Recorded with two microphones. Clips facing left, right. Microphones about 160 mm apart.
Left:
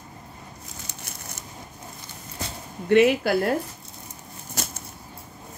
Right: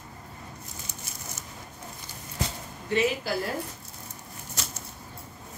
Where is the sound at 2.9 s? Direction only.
65° left (ahead or behind).